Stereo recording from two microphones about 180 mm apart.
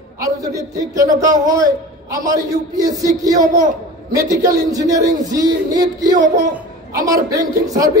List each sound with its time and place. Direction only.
0.2 s a man's voice: 20° right (ahead or behind)